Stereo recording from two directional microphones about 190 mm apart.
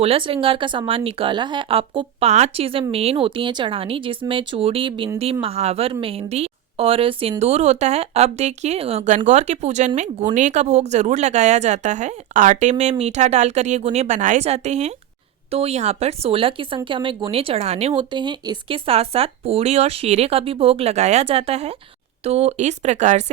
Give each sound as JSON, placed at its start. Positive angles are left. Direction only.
{"t": 0.0, "sound": "a woman's voice", "side_deg": -30}